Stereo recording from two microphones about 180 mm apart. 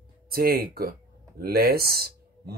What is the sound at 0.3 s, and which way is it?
Speech, 55° right (ahead or behind).